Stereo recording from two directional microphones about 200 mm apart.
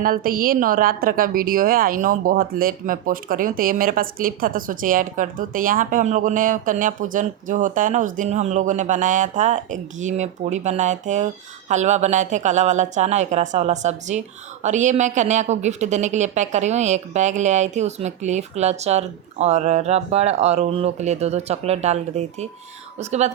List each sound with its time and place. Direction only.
0.0 s a woman's voice: 45° right (ahead or behind)